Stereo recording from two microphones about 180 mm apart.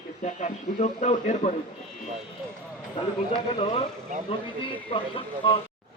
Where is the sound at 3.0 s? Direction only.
30° left (ahead or behind).